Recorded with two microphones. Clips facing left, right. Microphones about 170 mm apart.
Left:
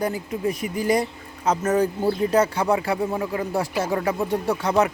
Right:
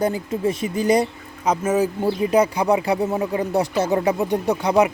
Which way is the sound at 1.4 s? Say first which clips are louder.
Right 1 dB; 10° right (ahead or behind).